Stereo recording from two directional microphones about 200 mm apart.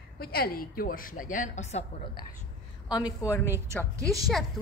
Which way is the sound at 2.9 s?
20° left (ahead or behind).